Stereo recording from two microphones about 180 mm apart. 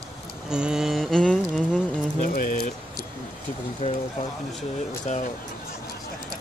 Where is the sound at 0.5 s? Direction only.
5° right (ahead or behind).